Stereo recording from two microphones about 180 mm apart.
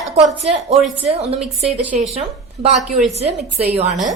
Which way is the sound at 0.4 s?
35° right (ahead or behind).